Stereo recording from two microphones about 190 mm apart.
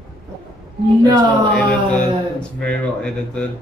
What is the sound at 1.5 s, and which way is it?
Speech, 5° left (ahead or behind).